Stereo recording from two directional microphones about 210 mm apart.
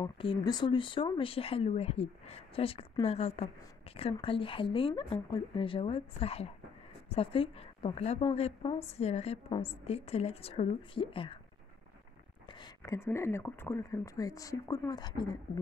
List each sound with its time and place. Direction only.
0.0 s a woman's voice: 20° left (ahead or behind)
12.4 s speech: 20° left (ahead or behind)